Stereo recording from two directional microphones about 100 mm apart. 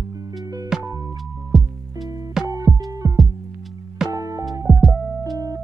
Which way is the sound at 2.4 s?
35° right (ahead or behind).